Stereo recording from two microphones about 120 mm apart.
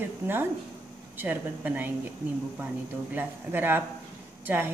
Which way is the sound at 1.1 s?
15° right (ahead or behind).